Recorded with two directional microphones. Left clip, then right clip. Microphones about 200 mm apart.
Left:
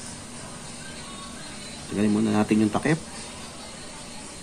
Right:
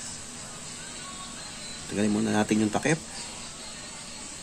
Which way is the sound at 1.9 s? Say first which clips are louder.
Left 2 dB; 15° right (ahead or behind).